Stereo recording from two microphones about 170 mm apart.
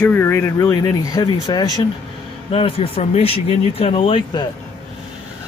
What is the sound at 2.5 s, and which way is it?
Speech, 35° left (ahead or behind).